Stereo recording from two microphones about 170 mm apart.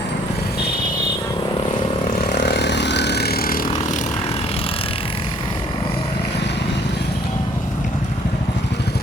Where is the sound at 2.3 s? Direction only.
70° left (ahead or behind); by 4.0 s 50° left (ahead or behind).